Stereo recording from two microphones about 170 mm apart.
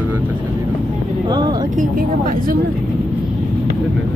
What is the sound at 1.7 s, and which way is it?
Speech, 55° right (ahead or behind).